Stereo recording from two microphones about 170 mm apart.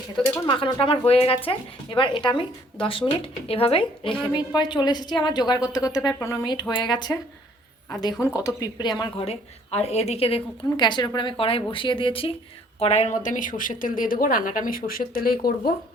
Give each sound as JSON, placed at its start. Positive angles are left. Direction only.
{"t": 0.3, "sound": "a woman's voice", "side_deg": 30}
{"t": 7.1, "sound": "a woman's voice", "side_deg": 15}